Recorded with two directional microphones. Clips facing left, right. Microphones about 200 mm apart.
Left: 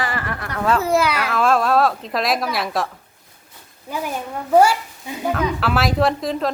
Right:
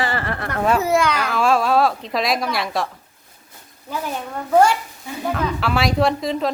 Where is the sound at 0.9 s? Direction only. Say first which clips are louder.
Even; 5° left (ahead or behind).